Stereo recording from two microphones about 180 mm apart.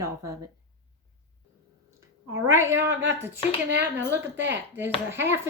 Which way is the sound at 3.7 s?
80° right.